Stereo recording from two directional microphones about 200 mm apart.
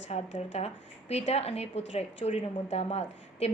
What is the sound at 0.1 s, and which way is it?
A woman's voice, 35° left (ahead or behind).